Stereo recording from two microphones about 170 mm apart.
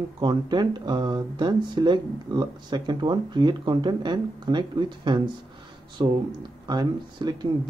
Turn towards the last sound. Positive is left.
turn(degrees=-25)  # may be behind; listen again after turning